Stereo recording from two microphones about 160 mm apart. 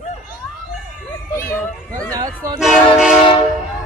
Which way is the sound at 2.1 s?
25° right (ahead or behind).